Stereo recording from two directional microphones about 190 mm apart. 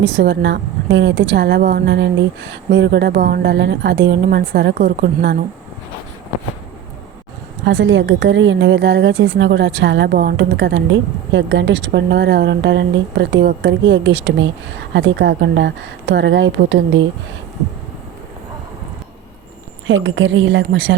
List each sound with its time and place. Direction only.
0.0 s a woman's voice: 70° right (ahead or behind)
7.6 s a woman's voice: 80° right
19.9 s a woman's voice: 85° right